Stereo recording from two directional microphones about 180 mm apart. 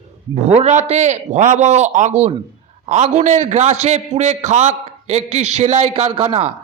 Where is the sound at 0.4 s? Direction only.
35° right (ahead or behind).